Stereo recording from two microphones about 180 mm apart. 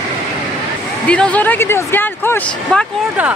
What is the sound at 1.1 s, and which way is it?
Speech, 5° left (ahead or behind).